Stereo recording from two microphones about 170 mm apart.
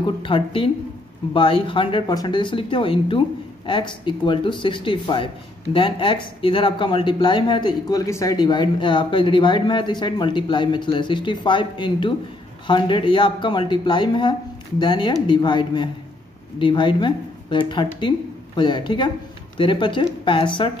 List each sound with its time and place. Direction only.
0.0 s a woman's voice: 30° left (ahead or behind)